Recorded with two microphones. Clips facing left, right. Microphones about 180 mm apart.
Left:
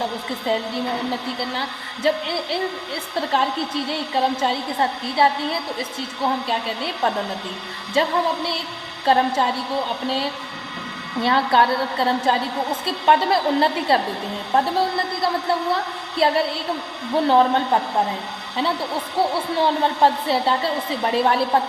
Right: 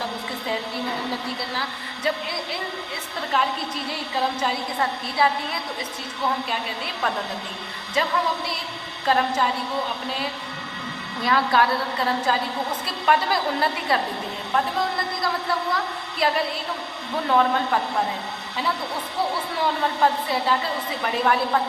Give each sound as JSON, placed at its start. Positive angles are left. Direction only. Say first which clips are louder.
{"t": 2.0, "sound": "a woman's voice", "louder": "left 6 dB", "side_deg": 30}
{"t": 4.1, "sound": "a woman's voice", "louder": "left 3 dB", "side_deg": 30}
{"t": 8.0, "sound": "a woman's voice", "louder": "left 4 dB", "side_deg": 30}
{"t": 11.2, "sound": "a woman's voice", "louder": "left 3 dB", "side_deg": 30}
{"t": 19.5, "sound": "a woman's voice", "louder": "left 4 dB", "side_deg": 30}